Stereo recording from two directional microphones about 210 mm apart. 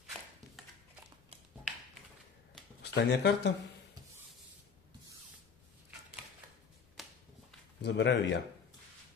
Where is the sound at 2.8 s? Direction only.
55° left (ahead or behind).